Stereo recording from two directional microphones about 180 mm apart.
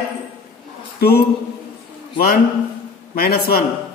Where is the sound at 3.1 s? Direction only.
60° left (ahead or behind).